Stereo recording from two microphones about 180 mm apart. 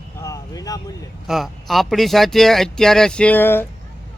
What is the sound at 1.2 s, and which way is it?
Speech, centre (ahead or behind).